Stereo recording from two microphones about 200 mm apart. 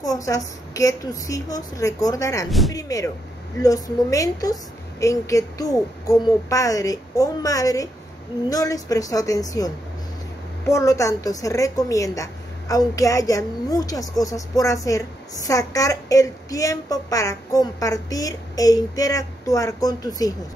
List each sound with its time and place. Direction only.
0.0 s a woman's voice: 15° left (ahead or behind)
10.7 s a woman's voice: 15° left (ahead or behind)